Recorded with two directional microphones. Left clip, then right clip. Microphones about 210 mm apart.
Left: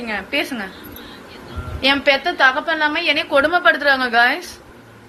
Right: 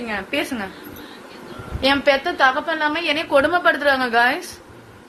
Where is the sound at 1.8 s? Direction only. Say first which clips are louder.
Left 1 dB; 25° right (ahead or behind).